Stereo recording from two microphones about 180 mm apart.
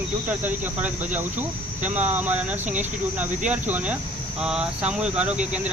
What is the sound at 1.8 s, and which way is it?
Speech, 40° right (ahead or behind).